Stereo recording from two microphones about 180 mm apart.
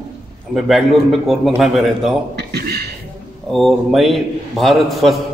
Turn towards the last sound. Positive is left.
turn(degrees=0)  # may be behind; listen again after turning